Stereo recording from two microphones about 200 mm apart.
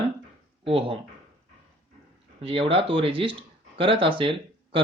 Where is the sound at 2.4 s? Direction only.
30° right (ahead or behind).